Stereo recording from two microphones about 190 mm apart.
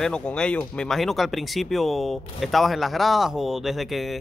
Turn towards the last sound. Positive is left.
turn(degrees=0)  # may be behind; listen again after turning